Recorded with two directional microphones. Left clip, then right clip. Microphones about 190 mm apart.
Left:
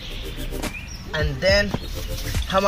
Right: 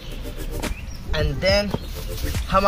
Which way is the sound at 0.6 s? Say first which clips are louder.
Left 1 dB; centre (ahead or behind).